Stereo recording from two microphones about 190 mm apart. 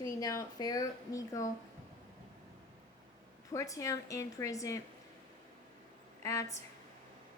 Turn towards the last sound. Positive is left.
turn(degrees=15)  # may be behind; listen again after turning